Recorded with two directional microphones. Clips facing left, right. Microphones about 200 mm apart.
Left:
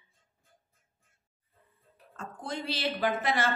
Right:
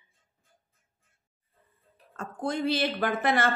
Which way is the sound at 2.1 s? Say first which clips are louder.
Right 7 dB; 55° right (ahead or behind).